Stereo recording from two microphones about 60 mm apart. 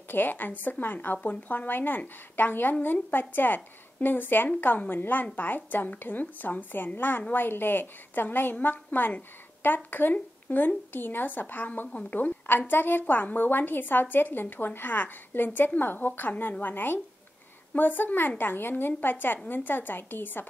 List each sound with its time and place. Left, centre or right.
0.1 s a woman's voice: left